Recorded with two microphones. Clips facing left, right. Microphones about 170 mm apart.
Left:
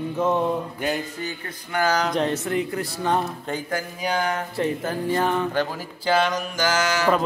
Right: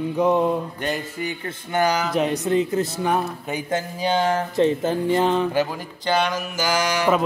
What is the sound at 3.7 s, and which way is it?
Speech, 30° right (ahead or behind).